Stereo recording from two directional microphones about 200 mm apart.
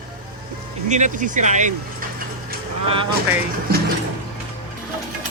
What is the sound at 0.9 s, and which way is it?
Speech, 40° right (ahead or behind).